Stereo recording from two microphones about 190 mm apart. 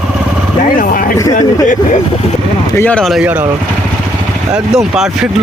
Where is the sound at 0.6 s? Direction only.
45° left (ahead or behind).